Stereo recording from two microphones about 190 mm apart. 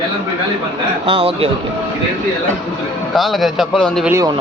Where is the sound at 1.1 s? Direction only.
30° right (ahead or behind).